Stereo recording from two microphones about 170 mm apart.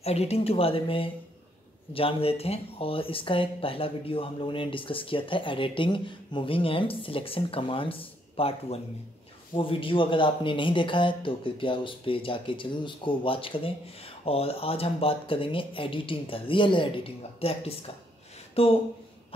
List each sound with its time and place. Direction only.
0.0 s speech: 35° left (ahead or behind)